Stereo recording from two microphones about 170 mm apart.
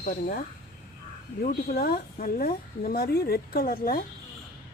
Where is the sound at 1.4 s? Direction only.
60° left (ahead or behind).